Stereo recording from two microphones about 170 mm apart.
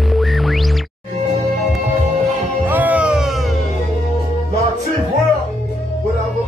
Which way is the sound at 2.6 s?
10° right (ahead or behind).